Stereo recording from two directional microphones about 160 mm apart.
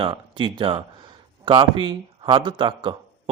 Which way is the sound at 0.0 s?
30° right (ahead or behind).